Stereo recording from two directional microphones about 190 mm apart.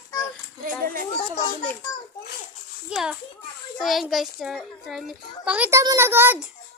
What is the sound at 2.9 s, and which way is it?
A child's voice, 5° right (ahead or behind).